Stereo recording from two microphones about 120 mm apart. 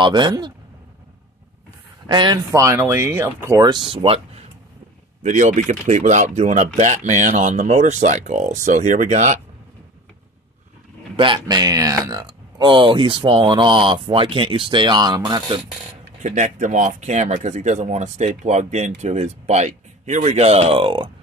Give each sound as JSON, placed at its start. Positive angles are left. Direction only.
{"t": 0.0, "sound": "speech", "side_deg": -40}
{"t": 2.0, "sound": "speech", "side_deg": -35}
{"t": 3.8, "sound": "speech", "side_deg": -50}
{"t": 5.2, "sound": "speech", "side_deg": -90}
{"t": 11.1, "sound": "speech", "side_deg": -40}
{"t": 16.2, "sound": "speech", "side_deg": -75}